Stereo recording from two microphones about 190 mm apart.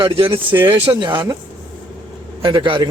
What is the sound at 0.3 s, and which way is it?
Speech, 10° right (ahead or behind).